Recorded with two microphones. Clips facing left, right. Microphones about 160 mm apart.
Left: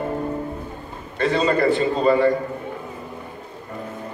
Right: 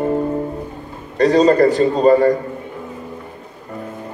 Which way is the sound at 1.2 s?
40° right (ahead or behind).